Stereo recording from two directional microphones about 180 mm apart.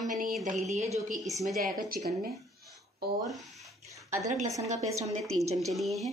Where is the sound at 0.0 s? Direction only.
45° right (ahead or behind).